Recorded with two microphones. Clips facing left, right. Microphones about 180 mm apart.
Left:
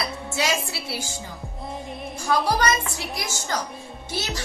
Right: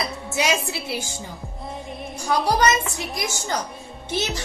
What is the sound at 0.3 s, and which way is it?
Speech, 20° right (ahead or behind).